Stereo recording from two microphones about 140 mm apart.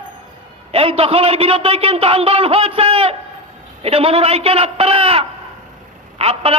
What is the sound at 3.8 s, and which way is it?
A man's voice, 45° right (ahead or behind).